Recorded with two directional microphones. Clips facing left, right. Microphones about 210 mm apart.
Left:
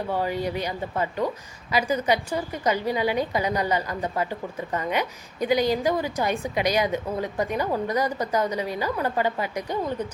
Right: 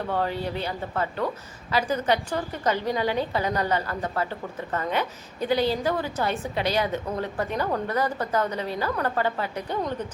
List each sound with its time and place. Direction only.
0.1 s a woman's voice: 10° left (ahead or behind)